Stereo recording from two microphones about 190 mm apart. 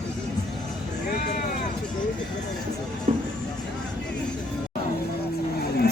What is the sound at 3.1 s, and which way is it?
Music, 40° right (ahead or behind).